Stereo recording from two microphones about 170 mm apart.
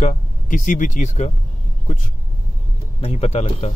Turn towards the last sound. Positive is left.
turn(degrees=40)  # may be behind; listen again after turning